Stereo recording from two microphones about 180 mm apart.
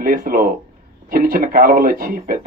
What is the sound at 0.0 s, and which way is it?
Speech, 50° right (ahead or behind).